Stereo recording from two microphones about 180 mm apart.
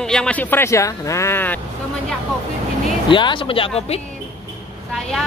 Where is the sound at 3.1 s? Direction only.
25° left (ahead or behind).